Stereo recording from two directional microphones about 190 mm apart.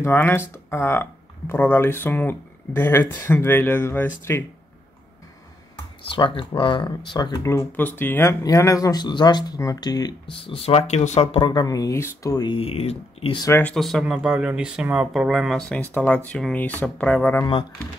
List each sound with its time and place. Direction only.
0.0 s speech: 10° left (ahead or behind)
6.0 s speech: 25° left (ahead or behind)
13.4 s speech: 10° left (ahead or behind)